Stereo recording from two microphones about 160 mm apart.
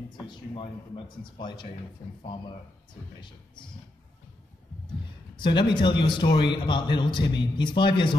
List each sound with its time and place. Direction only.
0.3 s a man's voice: 30° left (ahead or behind)
2.9 s a man's voice: 30° left (ahead or behind)
5.3 s a man's voice: 30° left (ahead or behind)